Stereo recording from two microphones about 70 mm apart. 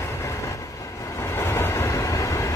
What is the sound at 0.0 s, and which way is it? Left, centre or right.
Train, left.